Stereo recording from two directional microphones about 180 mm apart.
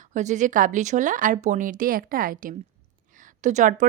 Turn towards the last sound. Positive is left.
turn(degrees=-45)  # may be behind; listen again after turning